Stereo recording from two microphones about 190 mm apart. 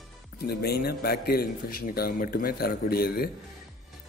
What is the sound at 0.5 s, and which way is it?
A man's voice, 55° left (ahead or behind).